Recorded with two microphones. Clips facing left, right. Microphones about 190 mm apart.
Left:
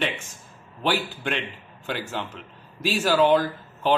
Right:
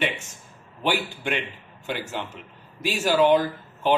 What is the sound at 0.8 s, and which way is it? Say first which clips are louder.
A man's voice: even; 15° right (ahead or behind).